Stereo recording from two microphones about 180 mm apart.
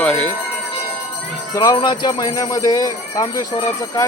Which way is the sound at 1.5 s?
20° left (ahead or behind).